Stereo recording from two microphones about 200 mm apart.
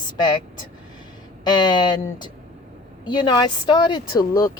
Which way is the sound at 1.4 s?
20° left (ahead or behind).